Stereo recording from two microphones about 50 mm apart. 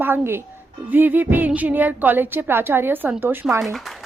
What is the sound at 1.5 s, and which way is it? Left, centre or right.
A woman's voice, right.